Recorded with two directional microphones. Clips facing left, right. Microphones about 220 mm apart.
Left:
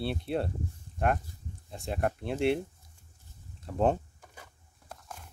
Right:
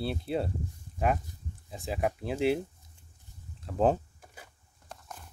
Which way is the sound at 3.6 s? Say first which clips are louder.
Right 1 dB; 5° right (ahead or behind).